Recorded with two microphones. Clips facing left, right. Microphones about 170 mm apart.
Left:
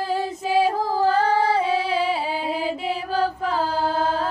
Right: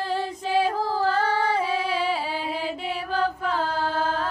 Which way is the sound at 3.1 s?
35° left (ahead or behind).